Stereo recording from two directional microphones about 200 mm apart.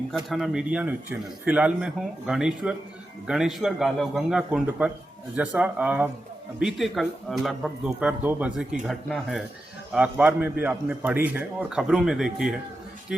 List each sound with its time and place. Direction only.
0.1 s a man's voice: centre (ahead or behind)